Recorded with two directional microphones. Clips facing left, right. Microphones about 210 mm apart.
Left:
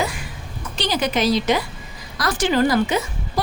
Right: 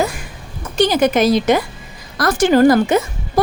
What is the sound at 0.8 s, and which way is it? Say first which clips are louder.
A woman's voice: right 8 dB; 50° right (ahead or behind).